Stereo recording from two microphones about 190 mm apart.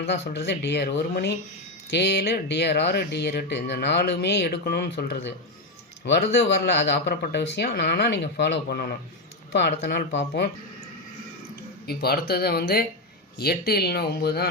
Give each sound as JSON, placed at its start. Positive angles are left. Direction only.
{"t": 0.1, "sound": "speech", "side_deg": 60}
{"t": 11.9, "sound": "speech", "side_deg": 55}